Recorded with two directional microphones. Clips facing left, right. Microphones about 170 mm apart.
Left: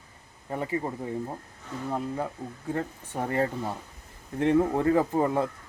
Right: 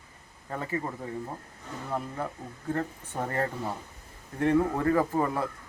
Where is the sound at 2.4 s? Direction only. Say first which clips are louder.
Left 4 dB; 5° right (ahead or behind).